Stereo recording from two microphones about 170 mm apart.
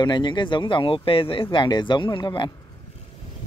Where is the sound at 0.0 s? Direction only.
25° left (ahead or behind).